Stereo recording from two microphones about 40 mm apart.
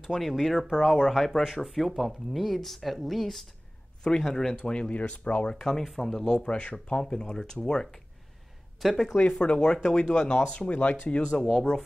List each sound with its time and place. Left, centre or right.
0.2 s speech: centre
0.9 s speech: centre
4.6 s speech: left
8.7 s speech: centre
9.1 s speech: left
11.3 s speech: centre